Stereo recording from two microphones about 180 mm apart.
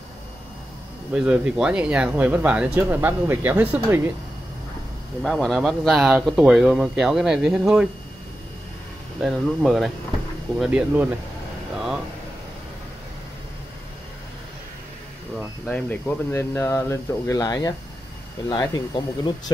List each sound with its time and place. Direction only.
1.1 s speech: 5° right (ahead or behind)
5.2 s speech: centre (ahead or behind)
9.2 s speech: centre (ahead or behind)
15.3 s speech: 5° left (ahead or behind); by 18.8 s 20° left (ahead or behind)